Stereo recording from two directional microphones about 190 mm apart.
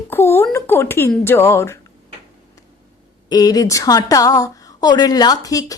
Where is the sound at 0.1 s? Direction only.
10° left (ahead or behind).